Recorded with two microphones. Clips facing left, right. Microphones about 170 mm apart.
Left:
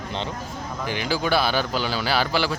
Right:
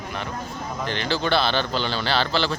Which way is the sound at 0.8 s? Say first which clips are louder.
Even; 10° left (ahead or behind).